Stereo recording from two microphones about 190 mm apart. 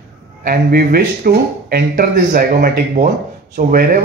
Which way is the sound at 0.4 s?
50° right (ahead or behind).